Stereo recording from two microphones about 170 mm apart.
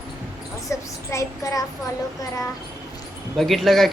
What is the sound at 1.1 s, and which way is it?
Child singing, 20° left (ahead or behind).